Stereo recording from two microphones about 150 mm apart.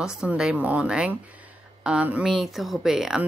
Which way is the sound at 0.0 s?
5° right (ahead or behind).